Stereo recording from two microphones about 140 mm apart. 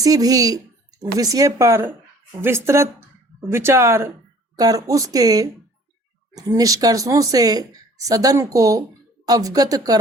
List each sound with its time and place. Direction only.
0.0 s a woman's voice: 25° right (ahead or behind)